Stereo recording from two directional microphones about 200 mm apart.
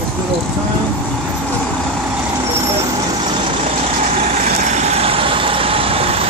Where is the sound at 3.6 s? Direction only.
35° right (ahead or behind).